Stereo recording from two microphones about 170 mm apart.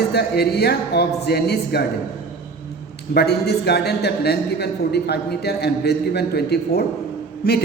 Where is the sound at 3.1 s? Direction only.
70° left (ahead or behind).